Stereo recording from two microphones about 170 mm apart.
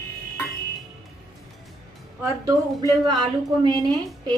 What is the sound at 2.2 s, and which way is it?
A woman's voice, 20° right (ahead or behind).